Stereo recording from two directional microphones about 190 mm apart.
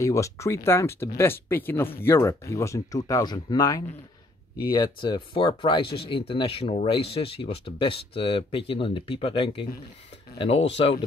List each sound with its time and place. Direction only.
0.0 s speech: 15° left (ahead or behind)